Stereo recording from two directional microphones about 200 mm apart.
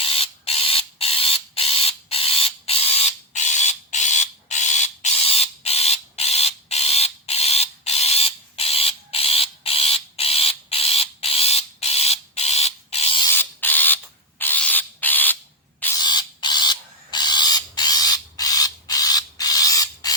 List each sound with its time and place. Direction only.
0.0 s mechanisms: 30° left (ahead or behind)
13.3 s mechanisms: 10° left (ahead or behind)
16.0 s printer: 20° left (ahead or behind)